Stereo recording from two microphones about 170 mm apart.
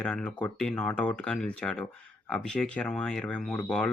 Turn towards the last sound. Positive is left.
turn(degrees=5)  # may be behind; listen again after turning